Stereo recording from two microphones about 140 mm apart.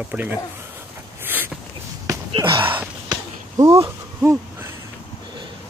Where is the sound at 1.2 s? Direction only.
15° right (ahead or behind).